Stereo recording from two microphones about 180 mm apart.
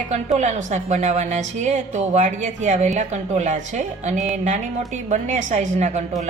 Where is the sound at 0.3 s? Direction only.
40° right (ahead or behind).